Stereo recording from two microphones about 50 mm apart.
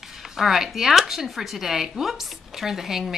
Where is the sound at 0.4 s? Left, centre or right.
Centre.